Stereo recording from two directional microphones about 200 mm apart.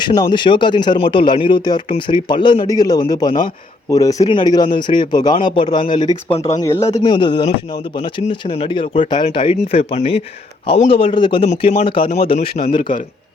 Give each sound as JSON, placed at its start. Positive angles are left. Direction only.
{"t": 0.0, "sound": "speech", "side_deg": 25}
{"t": 6.6, "sound": "speech", "side_deg": 15}
{"t": 12.8, "sound": "a man's voice", "side_deg": 40}